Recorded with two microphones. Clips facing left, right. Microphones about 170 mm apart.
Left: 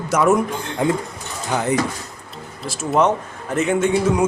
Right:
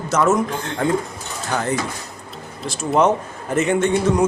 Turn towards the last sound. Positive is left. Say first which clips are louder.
# even
turn(degrees=5)  # may be behind; listen again after turning